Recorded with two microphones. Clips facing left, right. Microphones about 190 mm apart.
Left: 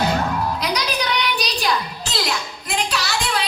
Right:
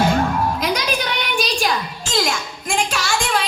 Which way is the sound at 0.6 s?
45° right (ahead or behind).